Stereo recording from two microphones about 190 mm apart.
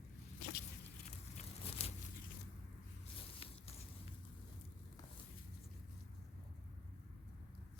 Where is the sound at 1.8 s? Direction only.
35° left (ahead or behind).